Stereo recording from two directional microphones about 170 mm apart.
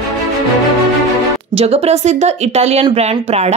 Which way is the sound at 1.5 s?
35° right (ahead or behind).